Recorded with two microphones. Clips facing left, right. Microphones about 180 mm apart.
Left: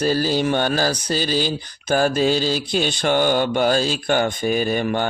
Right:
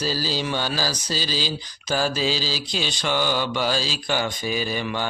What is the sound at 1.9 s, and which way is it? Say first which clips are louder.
Mantra: left 6 dB; 55° left (ahead or behind).